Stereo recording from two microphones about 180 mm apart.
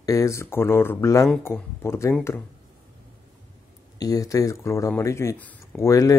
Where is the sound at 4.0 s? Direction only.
20° left (ahead or behind).